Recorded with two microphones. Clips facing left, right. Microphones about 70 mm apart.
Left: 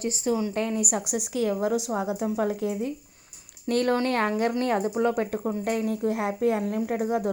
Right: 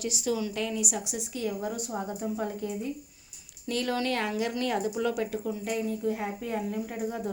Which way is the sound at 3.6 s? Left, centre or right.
Left.